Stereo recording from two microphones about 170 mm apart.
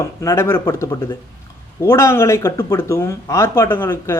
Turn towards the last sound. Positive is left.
turn(degrees=15)  # may be behind; listen again after turning